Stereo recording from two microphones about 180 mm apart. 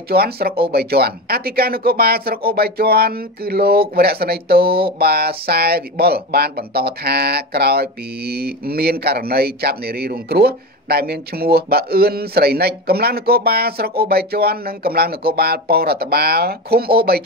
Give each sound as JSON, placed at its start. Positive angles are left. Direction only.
{"t": 0.1, "sound": "speech", "side_deg": -60}